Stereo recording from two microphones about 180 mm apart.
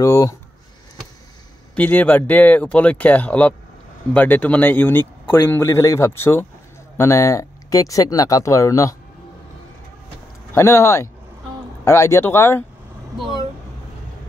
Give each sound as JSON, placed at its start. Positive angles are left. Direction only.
{"t": 0.0, "sound": "a man's voice", "side_deg": 15}
{"t": 1.8, "sound": "a man's voice", "side_deg": 10}
{"t": 10.5, "sound": "a man's voice", "side_deg": 15}